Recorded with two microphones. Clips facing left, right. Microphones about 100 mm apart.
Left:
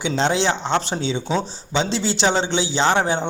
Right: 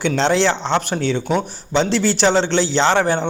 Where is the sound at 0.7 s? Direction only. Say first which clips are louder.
Right 3 dB; 20° left (ahead or behind).